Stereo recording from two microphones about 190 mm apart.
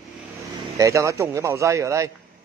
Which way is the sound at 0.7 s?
15° right (ahead or behind).